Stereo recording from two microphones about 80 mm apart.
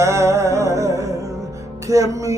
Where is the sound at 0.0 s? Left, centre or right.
Right.